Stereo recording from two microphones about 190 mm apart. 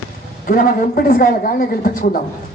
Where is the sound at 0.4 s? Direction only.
45° left (ahead or behind).